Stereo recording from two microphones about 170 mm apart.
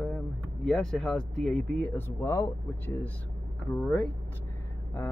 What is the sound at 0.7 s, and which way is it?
Speech, 5° left (ahead or behind).